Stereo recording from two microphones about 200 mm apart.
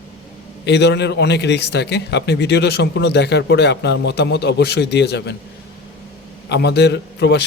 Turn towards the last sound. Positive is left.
turn(degrees=60)  # may be behind; listen again after turning